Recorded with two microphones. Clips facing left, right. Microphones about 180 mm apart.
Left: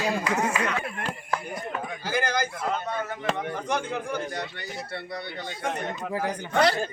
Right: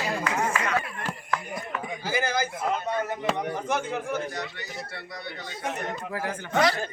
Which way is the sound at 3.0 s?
20° right (ahead or behind).